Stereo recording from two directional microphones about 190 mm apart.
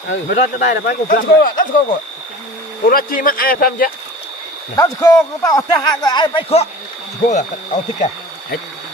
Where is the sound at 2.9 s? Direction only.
50° left (ahead or behind).